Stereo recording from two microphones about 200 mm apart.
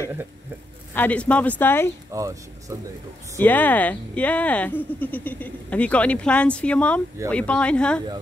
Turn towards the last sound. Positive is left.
turn(degrees=5)  # may be behind; listen again after turning